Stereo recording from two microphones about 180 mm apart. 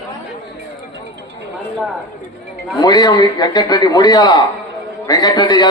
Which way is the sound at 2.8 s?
20° left (ahead or behind).